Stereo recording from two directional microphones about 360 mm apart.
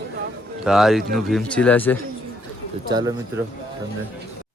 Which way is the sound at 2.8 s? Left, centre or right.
Centre.